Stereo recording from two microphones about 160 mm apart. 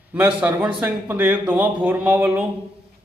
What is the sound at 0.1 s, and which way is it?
A man's voice, 10° right (ahead or behind).